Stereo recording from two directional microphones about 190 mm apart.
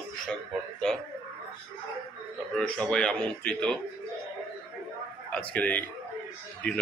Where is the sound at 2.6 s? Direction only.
5° left (ahead or behind).